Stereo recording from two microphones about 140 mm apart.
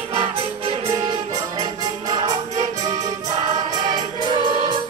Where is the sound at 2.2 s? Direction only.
30° right (ahead or behind).